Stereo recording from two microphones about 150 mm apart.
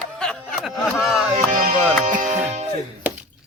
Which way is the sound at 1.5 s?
65° right (ahead or behind).